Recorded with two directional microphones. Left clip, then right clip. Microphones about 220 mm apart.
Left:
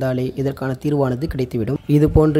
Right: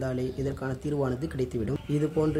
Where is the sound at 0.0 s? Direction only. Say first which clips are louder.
Left 10 dB; 40° left (ahead or behind).